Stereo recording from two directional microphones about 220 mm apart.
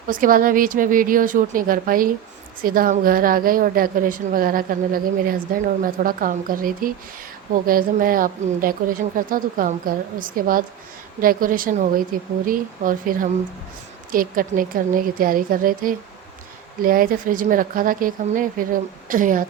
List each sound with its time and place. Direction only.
0.1 s a woman's voice: 40° right (ahead or behind)